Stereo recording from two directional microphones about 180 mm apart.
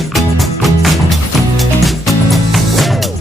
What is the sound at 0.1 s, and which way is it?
Music, centre (ahead or behind).